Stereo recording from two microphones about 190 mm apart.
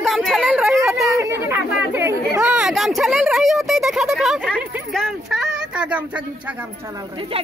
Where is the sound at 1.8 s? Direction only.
10° right (ahead or behind).